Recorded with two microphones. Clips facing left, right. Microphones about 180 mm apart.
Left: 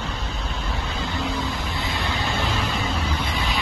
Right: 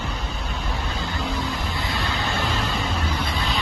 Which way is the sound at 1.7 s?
20° left (ahead or behind).